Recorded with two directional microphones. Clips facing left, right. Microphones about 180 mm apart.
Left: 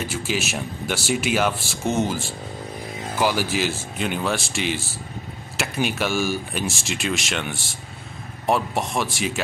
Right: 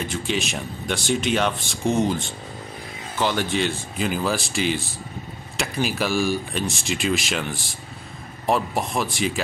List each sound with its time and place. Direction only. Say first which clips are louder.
0.0 s speech: even; 5° left (ahead or behind)